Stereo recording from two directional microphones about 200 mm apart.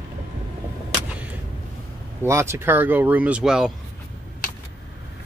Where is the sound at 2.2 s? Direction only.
15° right (ahead or behind).